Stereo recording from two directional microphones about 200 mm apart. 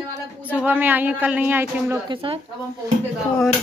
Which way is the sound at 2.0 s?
25° right (ahead or behind).